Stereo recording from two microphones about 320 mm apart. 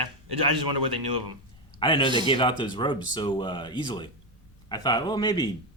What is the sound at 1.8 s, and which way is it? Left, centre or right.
Speech, centre.